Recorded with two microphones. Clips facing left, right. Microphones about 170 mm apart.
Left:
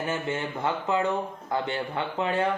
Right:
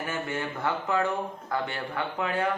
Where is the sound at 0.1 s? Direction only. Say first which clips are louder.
Left 2 dB; 20° left (ahead or behind).